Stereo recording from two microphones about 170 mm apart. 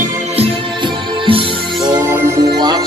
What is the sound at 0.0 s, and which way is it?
Music, 35° right (ahead or behind).